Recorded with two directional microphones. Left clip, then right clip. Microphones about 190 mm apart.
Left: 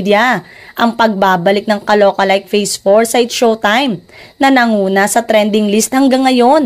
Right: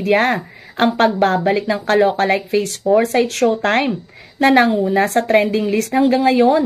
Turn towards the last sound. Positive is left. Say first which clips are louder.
# left 5 dB
turn(degrees=35)  # may be behind; listen again after turning